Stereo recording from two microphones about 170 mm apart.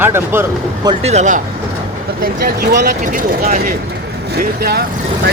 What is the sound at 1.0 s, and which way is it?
Speech, 40° right (ahead or behind).